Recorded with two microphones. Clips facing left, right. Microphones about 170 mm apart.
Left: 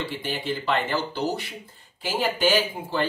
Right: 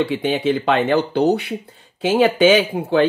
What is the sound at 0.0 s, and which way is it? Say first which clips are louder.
Speech: right 11 dB; 70° right (ahead or behind).